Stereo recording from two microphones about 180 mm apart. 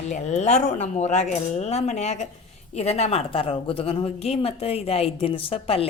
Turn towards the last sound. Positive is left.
turn(degrees=30)  # may be behind; listen again after turning